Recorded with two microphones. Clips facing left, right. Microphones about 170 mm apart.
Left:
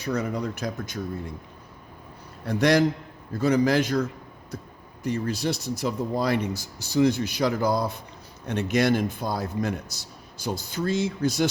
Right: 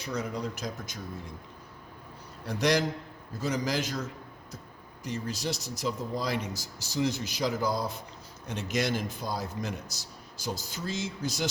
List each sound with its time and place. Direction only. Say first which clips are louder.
0.0 s speech: left 6 dB; 60° left (ahead or behind)
2.5 s speech: left 6 dB; 55° left (ahead or behind)
5.0 s speech: left 7 dB; 60° left (ahead or behind)